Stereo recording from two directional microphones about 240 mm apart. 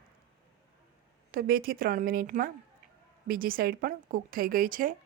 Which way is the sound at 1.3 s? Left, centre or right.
Right.